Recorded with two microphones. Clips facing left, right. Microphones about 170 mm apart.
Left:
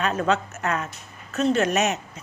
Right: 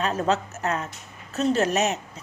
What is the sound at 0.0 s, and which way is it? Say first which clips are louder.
A woman's voice: left 1 dB; 35° right (ahead or behind).